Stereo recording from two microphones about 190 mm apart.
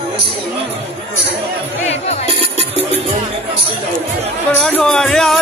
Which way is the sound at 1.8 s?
35° left (ahead or behind).